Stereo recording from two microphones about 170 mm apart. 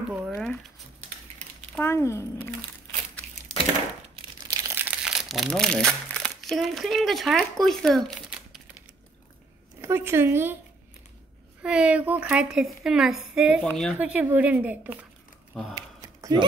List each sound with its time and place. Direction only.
0.3 s a woman's voice: 5° left (ahead or behind)
1.8 s speech: 15° left (ahead or behind)
4.5 s crumpling: 20° right (ahead or behind); by 8.6 s centre (ahead or behind)
9.8 s a woman's voice: 15° right (ahead or behind)
11.6 s a woman's voice: 5° right (ahead or behind)
13.9 s speech: 10° right (ahead or behind)
15.7 s a sound: 25° right (ahead or behind)